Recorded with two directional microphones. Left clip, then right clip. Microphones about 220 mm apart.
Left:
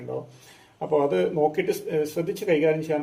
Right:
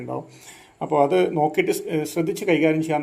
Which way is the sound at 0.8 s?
40° right (ahead or behind).